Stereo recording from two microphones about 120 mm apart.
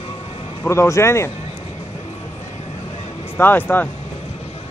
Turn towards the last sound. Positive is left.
turn(degrees=15)  # may be behind; listen again after turning